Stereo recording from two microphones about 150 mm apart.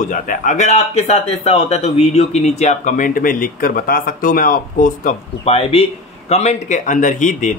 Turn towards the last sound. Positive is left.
turn(degrees=55)  # may be behind; listen again after turning